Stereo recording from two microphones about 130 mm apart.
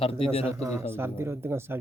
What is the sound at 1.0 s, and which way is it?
Speech, 20° right (ahead or behind).